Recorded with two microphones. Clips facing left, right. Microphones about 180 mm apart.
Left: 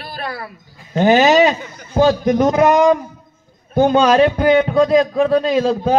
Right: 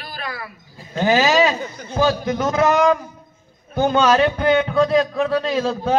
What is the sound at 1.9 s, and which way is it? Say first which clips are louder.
A man's voice: left 6 dB; 35° left (ahead or behind).